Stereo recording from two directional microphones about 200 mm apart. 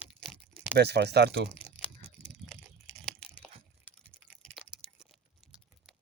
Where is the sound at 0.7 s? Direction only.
55° right (ahead or behind).